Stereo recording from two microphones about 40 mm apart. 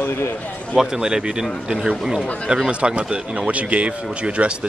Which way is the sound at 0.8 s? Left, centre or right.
Centre.